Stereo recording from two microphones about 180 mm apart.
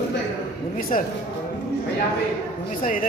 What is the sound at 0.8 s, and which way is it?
Speech, 50° left (ahead or behind).